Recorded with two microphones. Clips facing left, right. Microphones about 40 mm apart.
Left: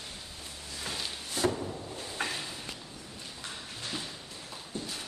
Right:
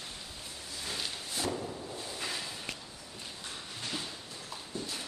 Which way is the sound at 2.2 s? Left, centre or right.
Left.